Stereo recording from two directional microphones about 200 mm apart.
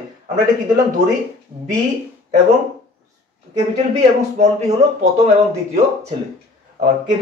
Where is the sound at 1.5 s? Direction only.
25° right (ahead or behind).